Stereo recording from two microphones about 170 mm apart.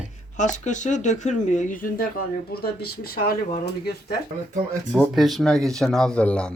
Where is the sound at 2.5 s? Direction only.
65° left (ahead or behind).